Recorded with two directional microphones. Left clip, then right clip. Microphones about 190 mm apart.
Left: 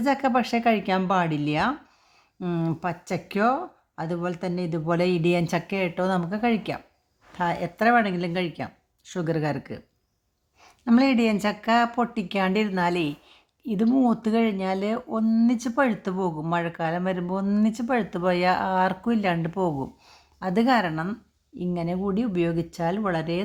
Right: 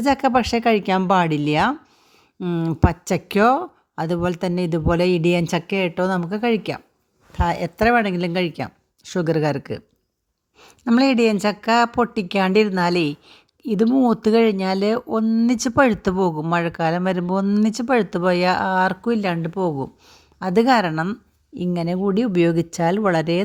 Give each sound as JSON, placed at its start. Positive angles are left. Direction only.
{"t": 0.0, "sound": "speech", "side_deg": -30}
{"t": 2.4, "sound": "speech", "side_deg": -20}
{"t": 2.8, "sound": "speech", "side_deg": -35}
{"t": 15.2, "sound": "speech", "side_deg": -20}
{"t": 15.4, "sound": "speech", "side_deg": -30}
{"t": 20.4, "sound": "speech", "side_deg": -35}